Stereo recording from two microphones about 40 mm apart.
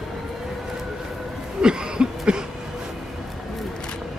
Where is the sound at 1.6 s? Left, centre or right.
Right.